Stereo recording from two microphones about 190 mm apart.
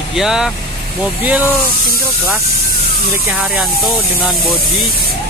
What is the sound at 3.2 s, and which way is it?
Speech, 5° right (ahead or behind).